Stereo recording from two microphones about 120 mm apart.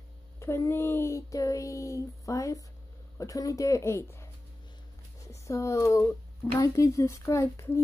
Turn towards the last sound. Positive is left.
turn(degrees=20)  # may be behind; listen again after turning